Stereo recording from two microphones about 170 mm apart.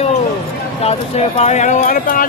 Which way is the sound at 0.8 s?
40° left (ahead or behind).